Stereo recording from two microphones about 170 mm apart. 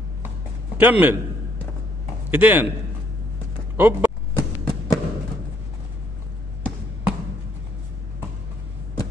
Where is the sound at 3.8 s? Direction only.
10° right (ahead or behind).